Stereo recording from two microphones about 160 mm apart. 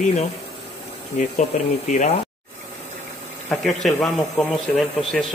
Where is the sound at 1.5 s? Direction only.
50° left (ahead or behind).